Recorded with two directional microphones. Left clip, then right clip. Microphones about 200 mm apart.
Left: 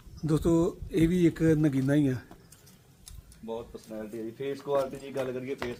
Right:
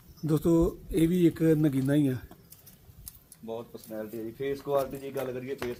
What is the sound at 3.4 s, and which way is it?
Speech, 30° right (ahead or behind).